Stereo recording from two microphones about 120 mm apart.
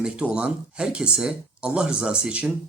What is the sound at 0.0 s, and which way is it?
Speech, 10° right (ahead or behind).